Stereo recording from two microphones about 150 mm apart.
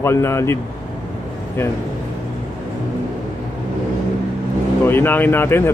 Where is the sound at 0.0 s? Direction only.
15° left (ahead or behind).